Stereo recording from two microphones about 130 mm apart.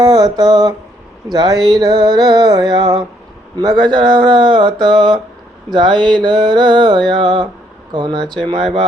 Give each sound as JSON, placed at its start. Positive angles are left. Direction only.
{"t": 0.0, "sound": "a sound", "side_deg": -30}
{"t": 1.3, "sound": "speech", "side_deg": -30}
{"t": 8.2, "sound": "speech", "side_deg": 5}
{"t": 8.4, "sound": "speech", "side_deg": -45}